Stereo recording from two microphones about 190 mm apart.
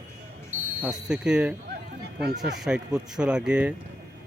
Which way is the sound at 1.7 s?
55° right (ahead or behind).